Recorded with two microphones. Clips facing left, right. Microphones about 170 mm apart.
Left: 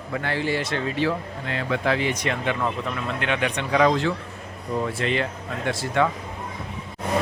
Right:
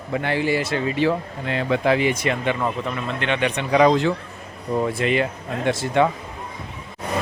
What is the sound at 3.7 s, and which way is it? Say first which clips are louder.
Speech: right 4 dB; 15° right (ahead or behind).